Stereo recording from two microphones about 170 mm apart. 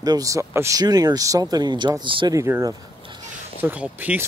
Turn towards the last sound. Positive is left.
turn(degrees=-10)  # may be behind; listen again after turning